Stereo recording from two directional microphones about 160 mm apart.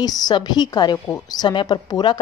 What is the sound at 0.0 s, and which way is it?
Speech, 25° left (ahead or behind).